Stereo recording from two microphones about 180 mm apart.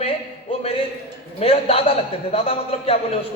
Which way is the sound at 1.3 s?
35° left (ahead or behind).